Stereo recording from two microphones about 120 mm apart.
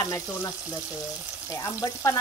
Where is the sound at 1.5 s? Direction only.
30° left (ahead or behind).